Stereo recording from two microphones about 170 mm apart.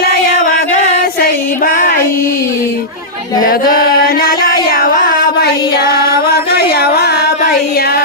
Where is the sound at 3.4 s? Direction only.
60° left (ahead or behind).